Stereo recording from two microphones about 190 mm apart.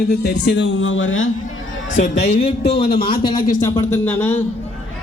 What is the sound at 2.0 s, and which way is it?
Speech, 35° left (ahead or behind).